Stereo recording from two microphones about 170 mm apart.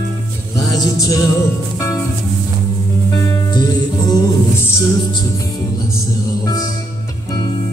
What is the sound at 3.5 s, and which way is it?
Music, 25° left (ahead or behind).